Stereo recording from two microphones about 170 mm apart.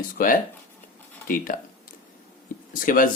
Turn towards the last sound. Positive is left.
turn(degrees=55)  # may be behind; listen again after turning